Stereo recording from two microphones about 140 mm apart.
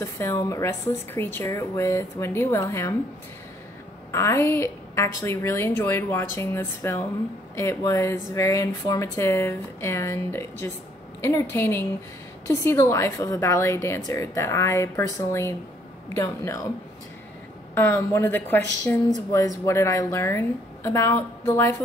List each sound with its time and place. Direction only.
0.0 s speech: 20° left (ahead or behind)
4.1 s a woman's voice: 20° left (ahead or behind)
17.7 s a woman's voice: 15° left (ahead or behind)